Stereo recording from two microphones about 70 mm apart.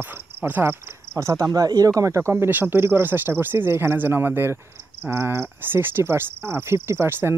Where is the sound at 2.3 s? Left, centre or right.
Right.